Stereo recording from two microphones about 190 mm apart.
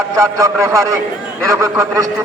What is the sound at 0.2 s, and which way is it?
A man's voice, 15° right (ahead or behind).